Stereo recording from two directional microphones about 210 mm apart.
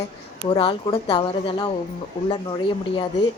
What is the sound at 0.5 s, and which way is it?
Speech, 20° left (ahead or behind).